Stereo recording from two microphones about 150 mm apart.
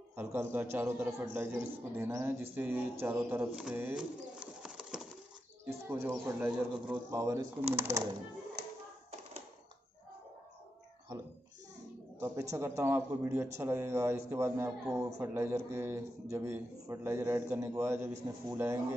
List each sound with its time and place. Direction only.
0.1 s a man's voice: 15° right (ahead or behind)
3.5 s bird: 10° right (ahead or behind)
5.7 s a man's voice: 15° right (ahead or behind)
12.2 s a man's voice: 15° right (ahead or behind)